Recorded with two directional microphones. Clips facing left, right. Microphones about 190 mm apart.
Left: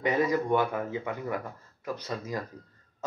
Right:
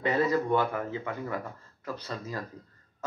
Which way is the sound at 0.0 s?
15° left (ahead or behind).